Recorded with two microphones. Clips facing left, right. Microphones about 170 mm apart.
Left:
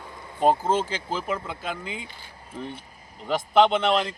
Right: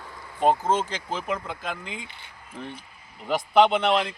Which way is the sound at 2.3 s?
30° left (ahead or behind).